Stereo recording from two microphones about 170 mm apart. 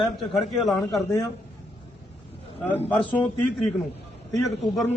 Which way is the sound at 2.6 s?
10° left (ahead or behind).